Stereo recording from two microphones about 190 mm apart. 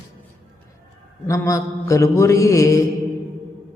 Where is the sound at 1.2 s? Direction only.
15° left (ahead or behind).